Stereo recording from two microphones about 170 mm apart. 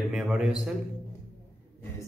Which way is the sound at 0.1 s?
5° right (ahead or behind).